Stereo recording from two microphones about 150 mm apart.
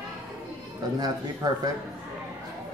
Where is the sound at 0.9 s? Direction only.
25° right (ahead or behind).